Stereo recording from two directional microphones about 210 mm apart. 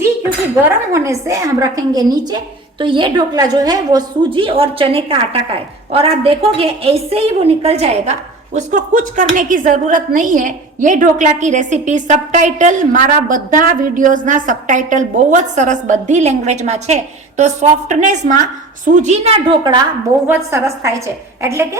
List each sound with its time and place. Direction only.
0.9 s a woman's voice: 15° right (ahead or behind)